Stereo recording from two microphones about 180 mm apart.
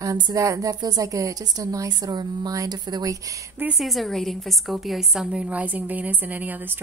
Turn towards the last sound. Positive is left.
turn(degrees=-10)  # may be behind; listen again after turning